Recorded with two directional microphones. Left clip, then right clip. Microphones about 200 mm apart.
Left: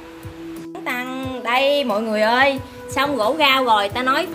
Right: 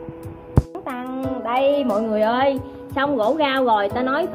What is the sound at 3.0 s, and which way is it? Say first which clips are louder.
Speech: left 1 dB; 40° left (ahead or behind).